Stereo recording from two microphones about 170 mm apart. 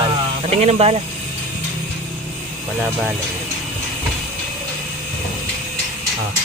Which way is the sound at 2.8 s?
10° right (ahead or behind).